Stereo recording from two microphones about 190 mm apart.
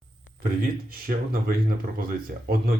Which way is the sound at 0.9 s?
50° right (ahead or behind).